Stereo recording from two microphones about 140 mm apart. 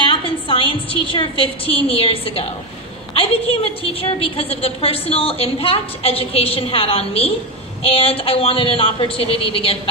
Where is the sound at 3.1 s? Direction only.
40° left (ahead or behind).